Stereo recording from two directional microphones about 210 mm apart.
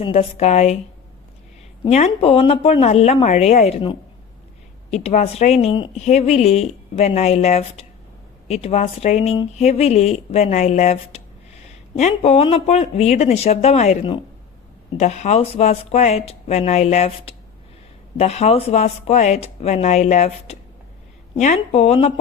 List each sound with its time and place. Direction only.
0.0 s speech: 30° left (ahead or behind)
1.8 s speech: 30° left (ahead or behind)